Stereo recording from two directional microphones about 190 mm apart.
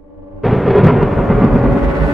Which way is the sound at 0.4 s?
Centre (ahead or behind).